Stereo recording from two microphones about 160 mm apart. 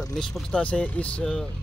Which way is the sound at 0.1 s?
5° left (ahead or behind).